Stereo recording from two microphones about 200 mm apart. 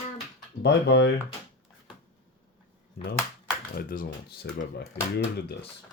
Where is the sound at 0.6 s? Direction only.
60° left (ahead or behind).